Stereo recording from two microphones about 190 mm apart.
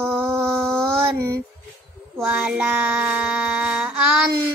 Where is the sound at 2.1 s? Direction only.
5° right (ahead or behind).